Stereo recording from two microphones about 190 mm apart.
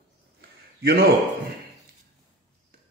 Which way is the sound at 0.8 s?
55° right (ahead or behind).